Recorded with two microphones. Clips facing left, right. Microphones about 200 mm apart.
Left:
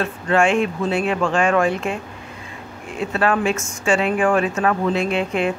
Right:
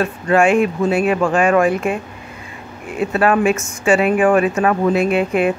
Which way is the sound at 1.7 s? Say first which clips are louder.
Right 4 dB; 55° right (ahead or behind).